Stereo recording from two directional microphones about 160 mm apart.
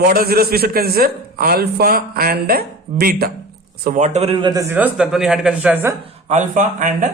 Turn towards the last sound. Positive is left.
turn(degrees=-55)  # may be behind; listen again after turning